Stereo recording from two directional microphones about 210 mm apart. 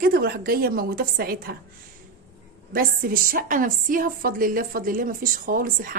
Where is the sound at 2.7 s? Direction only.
45° right (ahead or behind).